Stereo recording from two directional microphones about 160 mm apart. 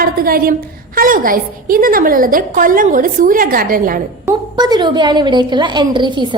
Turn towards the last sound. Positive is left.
turn(degrees=-30)  # may be behind; listen again after turning